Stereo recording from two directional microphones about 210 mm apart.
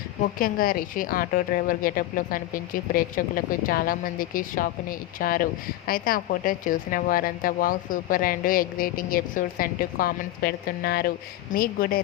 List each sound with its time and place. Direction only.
0.2 s a woman's voice: 45° left (ahead or behind)